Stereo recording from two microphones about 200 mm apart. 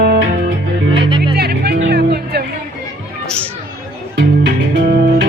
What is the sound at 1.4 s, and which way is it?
Music, 55° right (ahead or behind).